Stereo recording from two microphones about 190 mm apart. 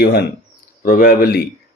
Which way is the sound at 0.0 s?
55° left (ahead or behind).